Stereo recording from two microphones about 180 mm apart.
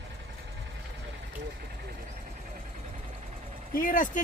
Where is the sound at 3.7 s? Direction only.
50° left (ahead or behind).